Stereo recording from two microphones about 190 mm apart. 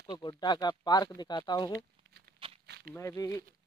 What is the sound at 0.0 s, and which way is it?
Speech, 25° left (ahead or behind).